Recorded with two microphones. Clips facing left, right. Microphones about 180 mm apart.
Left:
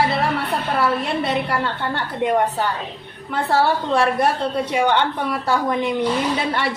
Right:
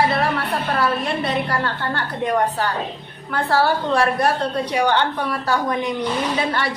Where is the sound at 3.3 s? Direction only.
25° left (ahead or behind).